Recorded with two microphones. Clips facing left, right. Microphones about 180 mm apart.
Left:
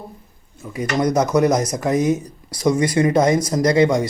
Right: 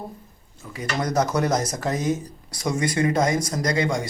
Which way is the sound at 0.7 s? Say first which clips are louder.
Left 7 dB; 25° left (ahead or behind).